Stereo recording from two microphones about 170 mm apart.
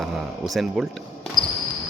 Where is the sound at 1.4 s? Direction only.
25° right (ahead or behind).